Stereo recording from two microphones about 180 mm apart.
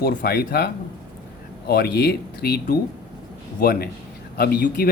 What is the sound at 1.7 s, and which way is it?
Speech, 60° left (ahead or behind).